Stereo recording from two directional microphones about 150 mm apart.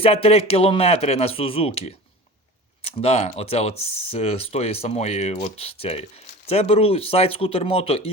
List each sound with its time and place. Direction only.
0.0 s speech: 40° left (ahead or behind)